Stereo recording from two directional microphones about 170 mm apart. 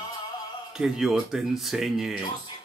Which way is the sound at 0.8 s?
Centre (ahead or behind).